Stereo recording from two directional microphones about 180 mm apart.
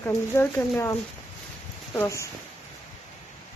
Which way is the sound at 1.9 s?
15° left (ahead or behind).